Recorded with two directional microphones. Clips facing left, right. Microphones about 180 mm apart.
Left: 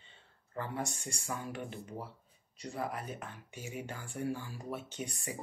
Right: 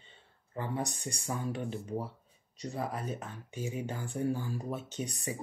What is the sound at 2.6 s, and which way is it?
Speech, 20° right (ahead or behind).